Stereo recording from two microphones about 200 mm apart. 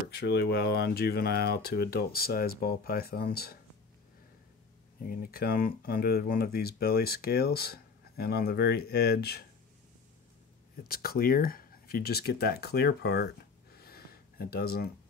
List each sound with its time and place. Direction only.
0.1 s speech: 55° left (ahead or behind)
5.0 s speech: 50° left (ahead or behind)
10.8 s speech: 50° left (ahead or behind)
13.7 s a sound: 50° left (ahead or behind)